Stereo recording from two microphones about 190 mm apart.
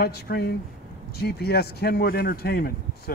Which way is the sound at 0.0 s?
55° left (ahead or behind).